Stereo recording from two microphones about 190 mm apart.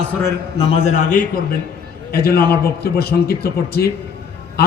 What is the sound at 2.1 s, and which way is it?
A man's voice, 55° left (ahead or behind).